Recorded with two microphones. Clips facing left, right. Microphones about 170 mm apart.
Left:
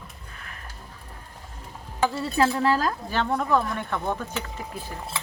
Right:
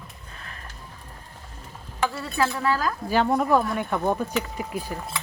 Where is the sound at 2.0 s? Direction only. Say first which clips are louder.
Left 2 dB; 35° left (ahead or behind).